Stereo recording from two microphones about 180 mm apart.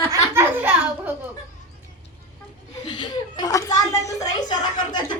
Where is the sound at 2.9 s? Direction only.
25° left (ahead or behind).